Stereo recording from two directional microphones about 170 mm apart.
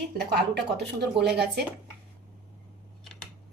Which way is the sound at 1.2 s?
30° right (ahead or behind).